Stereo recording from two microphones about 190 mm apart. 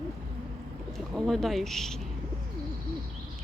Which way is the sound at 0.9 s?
Centre (ahead or behind).